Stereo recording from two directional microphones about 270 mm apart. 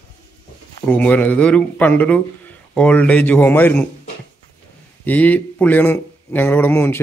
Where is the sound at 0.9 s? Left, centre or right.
Centre.